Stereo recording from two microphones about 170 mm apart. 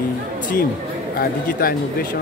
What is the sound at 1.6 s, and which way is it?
Speech, 60° left (ahead or behind).